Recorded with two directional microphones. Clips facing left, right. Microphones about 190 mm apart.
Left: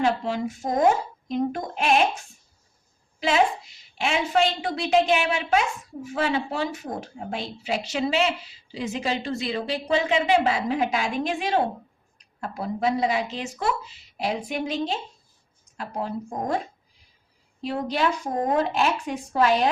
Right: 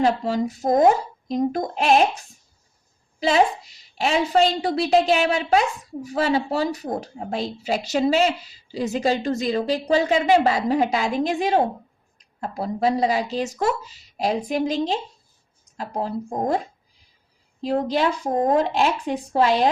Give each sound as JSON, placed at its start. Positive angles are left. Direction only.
{"t": 0.0, "sound": "a woman's voice", "side_deg": -40}
{"t": 17.6, "sound": "a woman's voice", "side_deg": -40}